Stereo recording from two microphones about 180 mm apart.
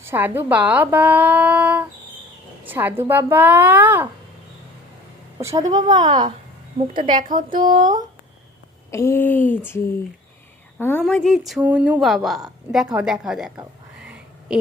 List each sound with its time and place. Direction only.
0.0 s speech: 10° right (ahead or behind)
5.4 s speech: 20° right (ahead or behind)
7.1 s speech: 45° right (ahead or behind)
7.3 s speech: 25° right (ahead or behind)
7.7 s speech: 45° right (ahead or behind)
8.9 s speech: 15° left (ahead or behind)
10.8 s a woman's voice: 10° left (ahead or behind); by 13.5 s 5° right (ahead or behind)
14.1 s a sound: 5° right (ahead or behind)